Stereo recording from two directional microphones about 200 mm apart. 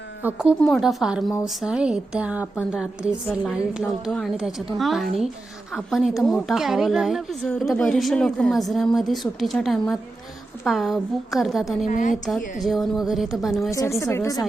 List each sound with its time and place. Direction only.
0.2 s a woman's voice: 5° right (ahead or behind)
11.9 s a woman's voice: 40° left (ahead or behind)
12.6 s a woman's voice: centre (ahead or behind)
13.7 s speech: 15° left (ahead or behind)